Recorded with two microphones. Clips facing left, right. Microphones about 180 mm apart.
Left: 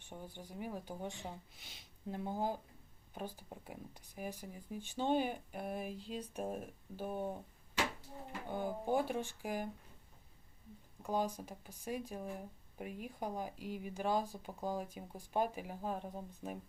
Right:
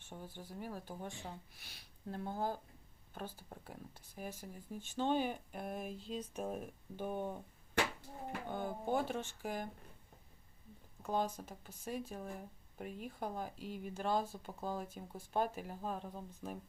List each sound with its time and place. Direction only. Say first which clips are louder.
0.0 s speech: even; 15° left (ahead or behind)
8.4 s speech: left 2 dB; 10° left (ahead or behind)
11.0 s speech: even; 10° left (ahead or behind)